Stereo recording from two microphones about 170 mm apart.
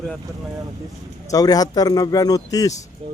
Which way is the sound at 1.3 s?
20° left (ahead or behind).